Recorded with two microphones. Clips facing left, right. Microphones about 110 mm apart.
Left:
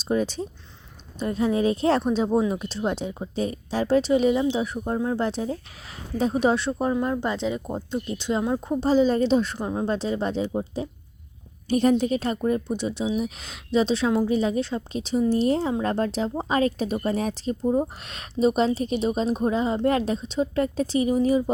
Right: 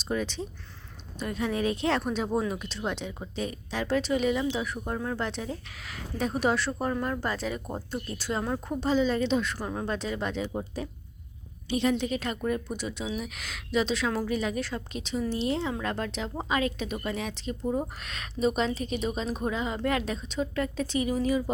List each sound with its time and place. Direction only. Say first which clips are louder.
0.1 s a woman's voice: left 6 dB; 40° left (ahead or behind)
8.9 s a woman's voice: left 6 dB; 40° left (ahead or behind)
9.6 s a woman's voice: left 6 dB; 20° left (ahead or behind)
11.7 s a woman's voice: left 6 dB; 45° left (ahead or behind)
17.7 s a woman's voice: left 6 dB; 25° left (ahead or behind)